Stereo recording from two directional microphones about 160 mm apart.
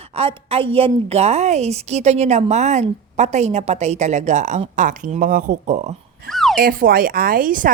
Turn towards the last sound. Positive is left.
turn(degrees=-60)  # may be behind; listen again after turning